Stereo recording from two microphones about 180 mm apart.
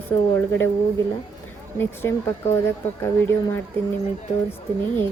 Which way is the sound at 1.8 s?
15° left (ahead or behind).